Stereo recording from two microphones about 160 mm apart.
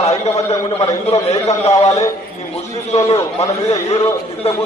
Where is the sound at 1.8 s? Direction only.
40° left (ahead or behind).